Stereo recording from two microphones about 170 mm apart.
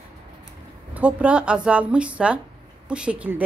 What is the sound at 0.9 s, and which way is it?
A woman's voice, 5° right (ahead or behind).